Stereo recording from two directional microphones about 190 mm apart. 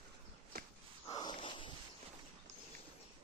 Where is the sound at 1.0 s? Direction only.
20° left (ahead or behind).